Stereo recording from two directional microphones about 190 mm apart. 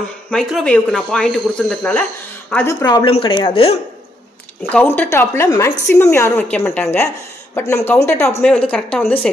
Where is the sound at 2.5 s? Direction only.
20° left (ahead or behind).